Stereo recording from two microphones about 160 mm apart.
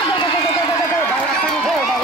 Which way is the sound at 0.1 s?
30° left (ahead or behind).